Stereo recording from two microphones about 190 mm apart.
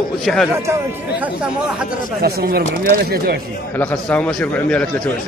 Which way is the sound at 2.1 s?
55° right (ahead or behind).